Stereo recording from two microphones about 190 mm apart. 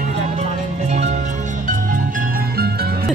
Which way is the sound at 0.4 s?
35° right (ahead or behind).